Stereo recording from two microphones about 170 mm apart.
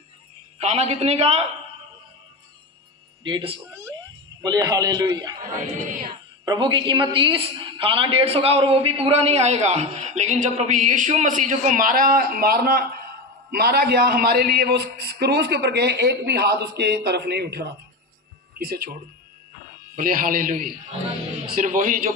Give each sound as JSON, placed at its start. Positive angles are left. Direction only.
{"t": 0.6, "sound": "a woman's voice", "side_deg": -40}
{"t": 3.3, "sound": "a man's voice", "side_deg": -30}
{"t": 18.6, "sound": "speech", "side_deg": -60}
{"t": 20.0, "sound": "a man's voice", "side_deg": -55}